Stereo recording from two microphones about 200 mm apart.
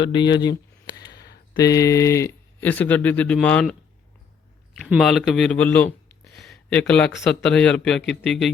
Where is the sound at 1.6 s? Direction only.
15° left (ahead or behind).